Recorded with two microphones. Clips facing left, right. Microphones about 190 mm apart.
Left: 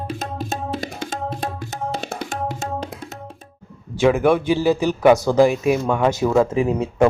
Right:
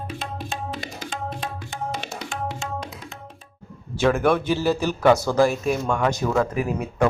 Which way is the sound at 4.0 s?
15° left (ahead or behind).